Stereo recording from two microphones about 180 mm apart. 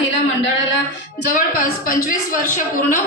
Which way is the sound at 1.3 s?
50° left (ahead or behind).